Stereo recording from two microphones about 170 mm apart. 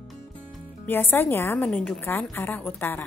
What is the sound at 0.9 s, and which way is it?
A woman's voice, 10° left (ahead or behind).